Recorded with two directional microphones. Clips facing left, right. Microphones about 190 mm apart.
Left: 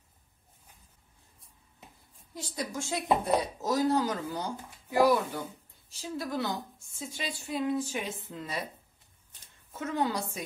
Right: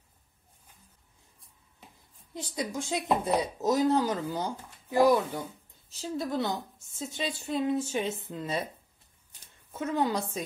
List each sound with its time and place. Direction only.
2.3 s a woman's voice: 20° right (ahead or behind)
9.7 s a woman's voice: 20° right (ahead or behind)